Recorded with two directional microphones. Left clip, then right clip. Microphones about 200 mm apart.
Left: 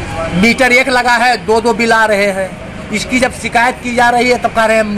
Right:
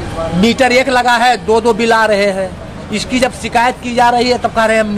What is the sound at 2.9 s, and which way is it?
A man's voice, 15° right (ahead or behind).